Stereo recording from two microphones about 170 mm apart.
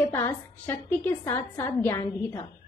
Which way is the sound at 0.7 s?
10° left (ahead or behind).